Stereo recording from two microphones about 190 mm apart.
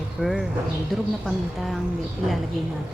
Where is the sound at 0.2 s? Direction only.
Centre (ahead or behind).